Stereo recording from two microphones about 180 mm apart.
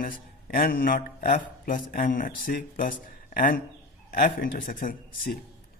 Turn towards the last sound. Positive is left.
turn(degrees=50)  # may be behind; listen again after turning